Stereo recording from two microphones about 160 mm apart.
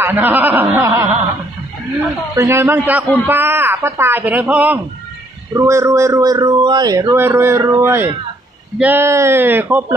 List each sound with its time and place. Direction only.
0.0 s speech: 10° right (ahead or behind)
2.3 s a man's voice: 20° right (ahead or behind)